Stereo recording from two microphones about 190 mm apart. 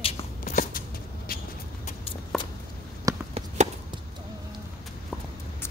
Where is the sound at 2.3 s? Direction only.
Centre (ahead or behind).